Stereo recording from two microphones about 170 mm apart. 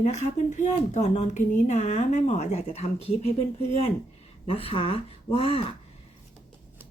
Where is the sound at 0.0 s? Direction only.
45° left (ahead or behind).